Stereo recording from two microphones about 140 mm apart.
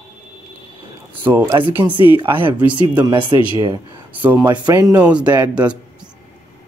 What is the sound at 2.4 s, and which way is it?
Speech, 10° right (ahead or behind).